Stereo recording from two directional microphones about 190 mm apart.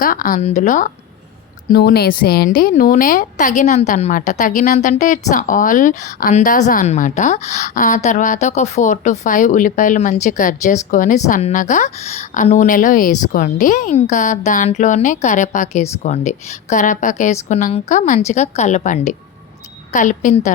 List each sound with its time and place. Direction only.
0.0 s speech: 45° left (ahead or behind)
1.7 s a woman's voice: 55° left (ahead or behind); by 20.5 s 40° left (ahead or behind)